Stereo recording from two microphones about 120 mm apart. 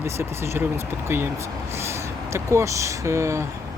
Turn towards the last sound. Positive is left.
turn(degrees=-25)  # may be behind; listen again after turning